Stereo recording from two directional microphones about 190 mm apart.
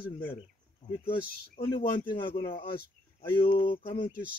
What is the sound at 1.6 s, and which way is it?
Speech, 30° left (ahead or behind).